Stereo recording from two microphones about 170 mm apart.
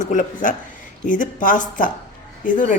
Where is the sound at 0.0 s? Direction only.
50° left (ahead or behind).